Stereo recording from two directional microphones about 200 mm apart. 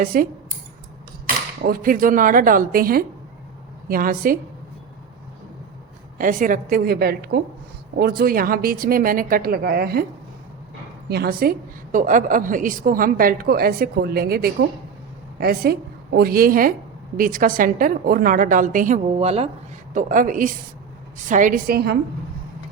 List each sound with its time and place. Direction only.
0.0 s a woman's voice: 45° right (ahead or behind)
1.6 s a woman's voice: 45° right (ahead or behind)
6.1 s a woman's voice: 40° right (ahead or behind)
11.1 s a woman's voice: 50° right (ahead or behind)